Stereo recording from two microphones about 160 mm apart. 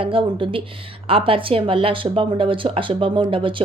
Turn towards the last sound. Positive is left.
turn(degrees=-30)  # may be behind; listen again after turning